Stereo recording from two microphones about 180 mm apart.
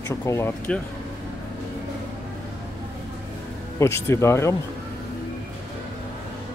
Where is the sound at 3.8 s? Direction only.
15° left (ahead or behind).